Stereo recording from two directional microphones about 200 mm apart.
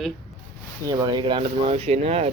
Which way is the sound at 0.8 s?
20° right (ahead or behind).